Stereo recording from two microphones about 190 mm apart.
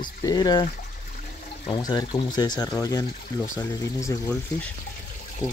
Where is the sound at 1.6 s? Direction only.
20° left (ahead or behind).